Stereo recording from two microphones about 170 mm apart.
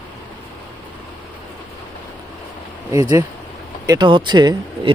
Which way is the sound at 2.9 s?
20° right (ahead or behind).